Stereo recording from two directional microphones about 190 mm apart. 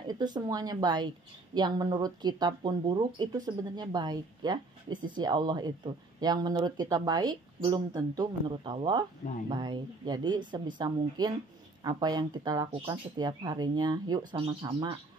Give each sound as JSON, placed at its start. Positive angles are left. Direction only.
{"t": 0.0, "sound": "a woman's voice", "side_deg": -20}